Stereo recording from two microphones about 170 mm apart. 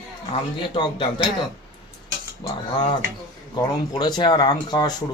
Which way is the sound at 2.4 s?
30° left (ahead or behind).